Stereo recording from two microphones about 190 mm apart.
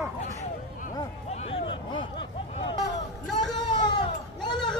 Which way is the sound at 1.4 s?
30° left (ahead or behind).